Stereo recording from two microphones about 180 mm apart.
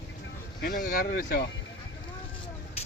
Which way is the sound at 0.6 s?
50° left (ahead or behind).